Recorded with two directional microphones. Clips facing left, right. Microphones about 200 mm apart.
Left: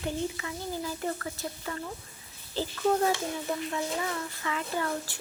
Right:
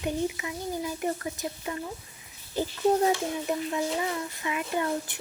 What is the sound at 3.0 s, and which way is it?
Speech, 20° right (ahead or behind).